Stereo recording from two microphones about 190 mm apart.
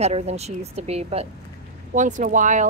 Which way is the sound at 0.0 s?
35° right (ahead or behind).